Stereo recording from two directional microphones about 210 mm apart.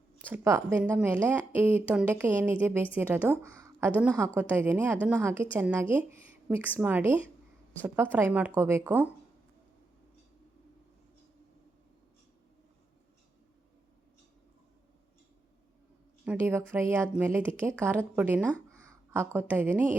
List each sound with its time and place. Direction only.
0.3 s a woman's voice: 15° right (ahead or behind)
16.2 s a woman's voice: 10° right (ahead or behind)
18.4 s a sound: 5° left (ahead or behind)
18.9 s a woman's voice: 10° right (ahead or behind)